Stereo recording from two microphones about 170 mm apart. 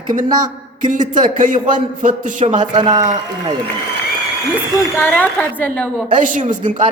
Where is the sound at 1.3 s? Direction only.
50° right (ahead or behind).